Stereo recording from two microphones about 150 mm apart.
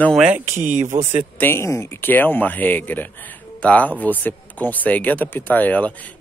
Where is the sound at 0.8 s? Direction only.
50° right (ahead or behind).